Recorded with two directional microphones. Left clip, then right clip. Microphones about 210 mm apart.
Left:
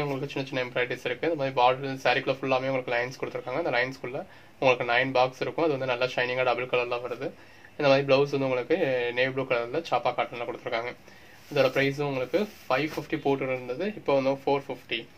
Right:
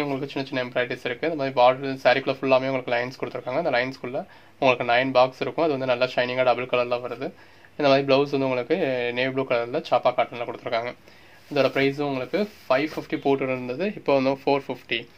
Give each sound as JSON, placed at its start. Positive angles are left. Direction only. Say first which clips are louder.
{"t": 0.0, "sound": "speech", "louder": "right 3 dB", "side_deg": -35}